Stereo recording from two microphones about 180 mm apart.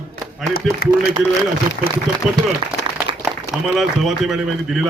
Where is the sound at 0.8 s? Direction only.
60° left (ahead or behind).